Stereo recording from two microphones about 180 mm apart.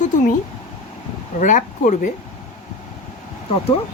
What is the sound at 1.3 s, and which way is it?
Speech, 45° left (ahead or behind).